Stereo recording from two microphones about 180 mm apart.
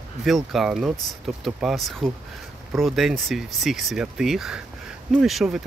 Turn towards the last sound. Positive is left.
turn(degrees=0)  # may be behind; listen again after turning